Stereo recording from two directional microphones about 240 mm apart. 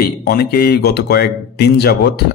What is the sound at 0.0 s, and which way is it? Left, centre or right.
Speech, left.